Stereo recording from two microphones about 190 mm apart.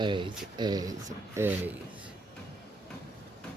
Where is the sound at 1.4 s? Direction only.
10° right (ahead or behind).